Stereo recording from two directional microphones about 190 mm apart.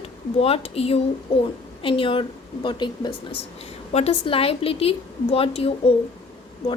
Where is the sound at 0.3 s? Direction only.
30° left (ahead or behind).